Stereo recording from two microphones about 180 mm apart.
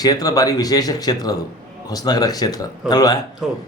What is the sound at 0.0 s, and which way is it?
Speech, 20° left (ahead or behind).